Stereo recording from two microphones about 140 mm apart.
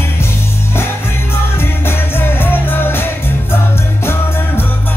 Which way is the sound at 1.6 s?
15° left (ahead or behind).